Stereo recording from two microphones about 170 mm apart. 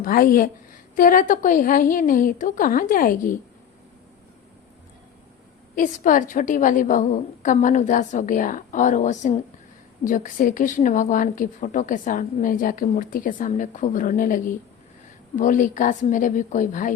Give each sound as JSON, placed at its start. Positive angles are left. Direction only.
{"t": 0.0, "sound": "a woman's voice", "side_deg": 55}
{"t": 5.7, "sound": "a woman's voice", "side_deg": 50}